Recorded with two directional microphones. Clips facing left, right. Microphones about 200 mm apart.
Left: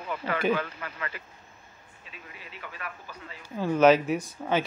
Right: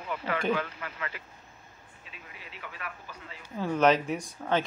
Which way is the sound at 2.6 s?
45° left (ahead or behind).